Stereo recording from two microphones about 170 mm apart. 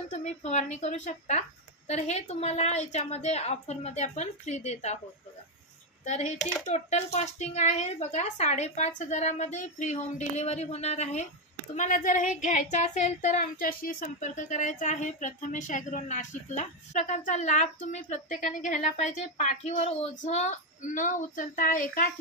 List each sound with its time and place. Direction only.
0.1 s a woman's voice: 45° left (ahead or behind)
6.0 s speech: 45° left (ahead or behind)